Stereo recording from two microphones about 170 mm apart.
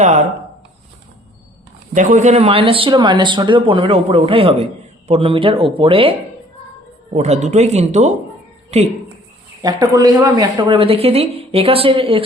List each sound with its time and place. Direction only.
1.9 s speech: 45° right (ahead or behind); by 6.1 s 30° right (ahead or behind)
7.1 s speech: 45° right (ahead or behind)
9.8 s speech: 20° right (ahead or behind)